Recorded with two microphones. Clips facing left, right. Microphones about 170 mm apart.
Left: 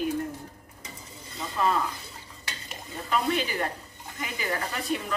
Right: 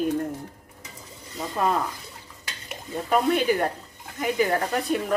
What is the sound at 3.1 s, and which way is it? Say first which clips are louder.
Speech: right 6 dB; 50° right (ahead or behind).